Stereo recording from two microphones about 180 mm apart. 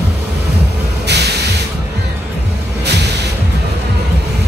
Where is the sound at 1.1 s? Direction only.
70° right (ahead or behind).